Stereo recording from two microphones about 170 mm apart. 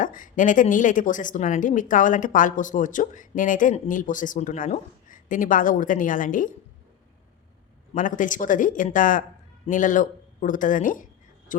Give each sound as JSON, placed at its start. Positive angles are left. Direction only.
{"t": 0.0, "sound": "speech", "side_deg": 50}
{"t": 7.9, "sound": "speech", "side_deg": 50}